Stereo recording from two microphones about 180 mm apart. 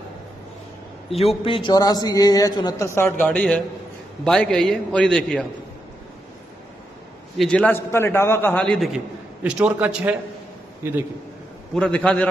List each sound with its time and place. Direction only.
1.1 s a man's voice: 35° left (ahead or behind); by 5.5 s 5° left (ahead or behind)
7.3 s a man's voice: 5° left (ahead or behind)
11.7 s a man's voice: 5° left (ahead or behind)